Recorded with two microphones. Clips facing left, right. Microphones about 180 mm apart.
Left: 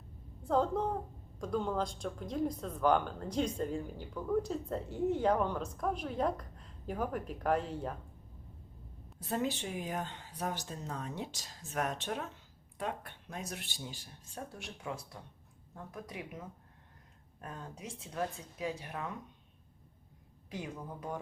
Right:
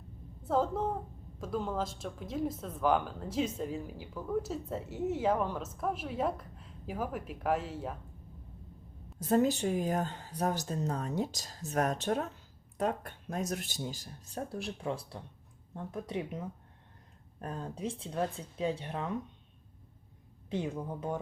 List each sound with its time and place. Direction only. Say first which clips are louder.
0.4 s speech: even; 5° right (ahead or behind)
9.1 s a woman's voice: right 8 dB; 40° right (ahead or behind)
17.4 s speech: right 8 dB; 35° right (ahead or behind)
20.5 s speech: right 7 dB; 25° right (ahead or behind)